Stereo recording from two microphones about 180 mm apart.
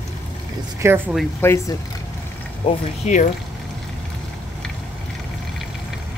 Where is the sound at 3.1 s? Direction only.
40° left (ahead or behind).